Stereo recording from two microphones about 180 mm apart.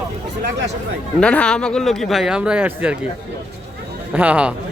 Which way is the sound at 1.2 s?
5° left (ahead or behind).